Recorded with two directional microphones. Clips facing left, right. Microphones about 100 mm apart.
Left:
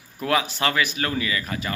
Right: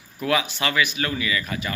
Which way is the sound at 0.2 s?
35° left (ahead or behind).